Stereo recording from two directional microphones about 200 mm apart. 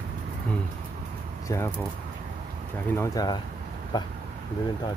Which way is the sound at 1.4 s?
15° left (ahead or behind).